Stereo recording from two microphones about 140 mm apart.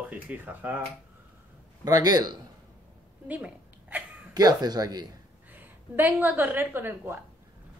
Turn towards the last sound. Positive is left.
turn(degrees=-15)  # may be behind; listen again after turning